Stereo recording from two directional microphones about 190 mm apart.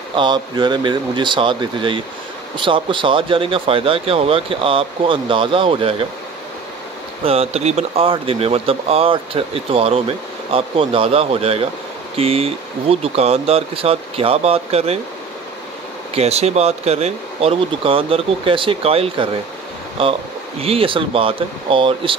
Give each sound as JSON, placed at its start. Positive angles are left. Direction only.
{"t": 0.1, "sound": "speech", "side_deg": -25}
{"t": 7.2, "sound": "speech", "side_deg": -35}
{"t": 16.2, "sound": "speech", "side_deg": -35}